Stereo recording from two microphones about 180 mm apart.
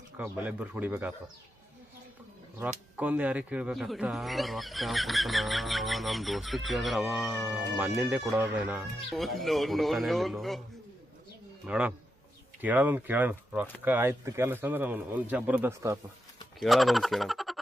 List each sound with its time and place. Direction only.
0.2 s a man's voice: 10° right (ahead or behind)
2.6 s speech: 10° right (ahead or behind)
11.6 s a man's voice: 5° right (ahead or behind)
16.6 s speech: centre (ahead or behind)